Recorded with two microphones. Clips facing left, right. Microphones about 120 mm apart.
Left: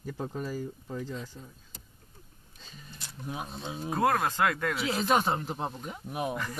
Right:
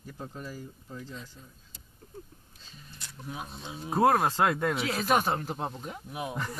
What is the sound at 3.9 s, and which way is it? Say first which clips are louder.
Speech: right 3 dB; 10° right (ahead or behind).